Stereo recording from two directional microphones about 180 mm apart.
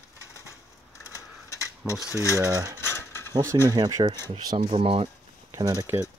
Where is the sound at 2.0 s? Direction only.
15° left (ahead or behind).